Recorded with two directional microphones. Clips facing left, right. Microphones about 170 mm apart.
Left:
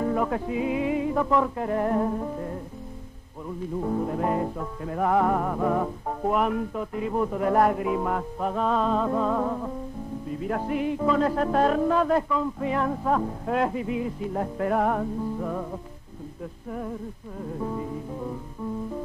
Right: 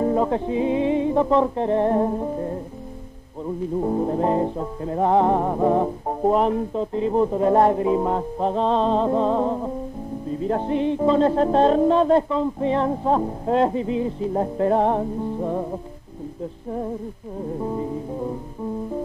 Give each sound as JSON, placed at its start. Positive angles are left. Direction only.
{"t": 0.0, "sound": "music", "side_deg": -30}
{"t": 17.4, "sound": "music", "side_deg": -30}